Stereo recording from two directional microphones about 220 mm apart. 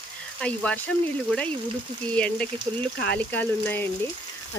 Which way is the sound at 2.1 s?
5° left (ahead or behind).